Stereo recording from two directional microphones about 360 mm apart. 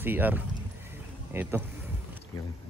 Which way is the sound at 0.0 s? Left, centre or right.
Centre.